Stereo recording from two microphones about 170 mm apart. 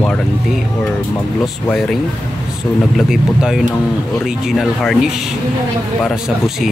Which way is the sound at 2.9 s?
Centre (ahead or behind).